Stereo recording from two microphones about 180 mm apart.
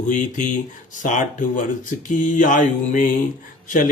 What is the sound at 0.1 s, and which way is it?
Speech, 45° left (ahead or behind).